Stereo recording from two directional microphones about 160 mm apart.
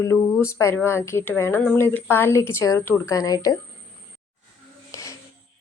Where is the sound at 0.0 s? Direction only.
15° left (ahead or behind).